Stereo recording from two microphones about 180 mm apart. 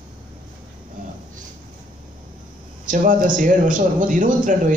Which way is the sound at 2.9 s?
45° right (ahead or behind).